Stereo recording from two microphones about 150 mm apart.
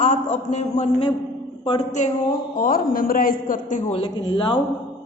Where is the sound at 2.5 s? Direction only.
70° left (ahead or behind).